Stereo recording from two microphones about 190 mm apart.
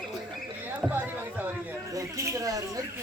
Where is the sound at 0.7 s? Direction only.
10° right (ahead or behind).